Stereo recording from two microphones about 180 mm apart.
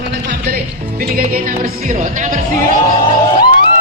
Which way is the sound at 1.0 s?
50° right (ahead or behind).